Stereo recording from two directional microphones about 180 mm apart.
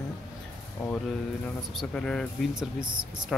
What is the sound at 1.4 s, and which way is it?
Speech, 5° left (ahead or behind).